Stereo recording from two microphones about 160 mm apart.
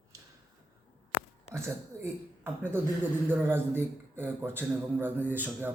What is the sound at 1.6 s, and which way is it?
A man's voice, 15° right (ahead or behind).